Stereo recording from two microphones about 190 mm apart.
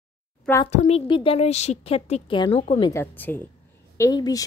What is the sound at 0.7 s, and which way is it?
A woman's voice, 35° left (ahead or behind).